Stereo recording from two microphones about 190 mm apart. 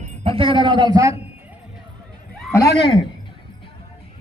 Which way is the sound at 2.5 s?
15° left (ahead or behind).